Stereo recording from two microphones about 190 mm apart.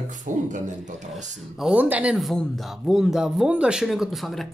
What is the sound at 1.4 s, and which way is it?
Speech, centre (ahead or behind).